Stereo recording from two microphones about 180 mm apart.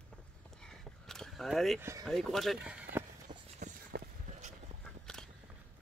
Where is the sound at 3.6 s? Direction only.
40° right (ahead or behind).